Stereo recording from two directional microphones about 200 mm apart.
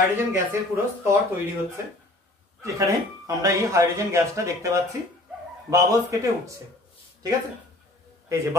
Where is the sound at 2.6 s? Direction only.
15° right (ahead or behind).